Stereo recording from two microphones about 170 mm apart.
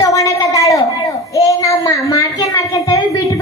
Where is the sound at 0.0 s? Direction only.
20° left (ahead or behind).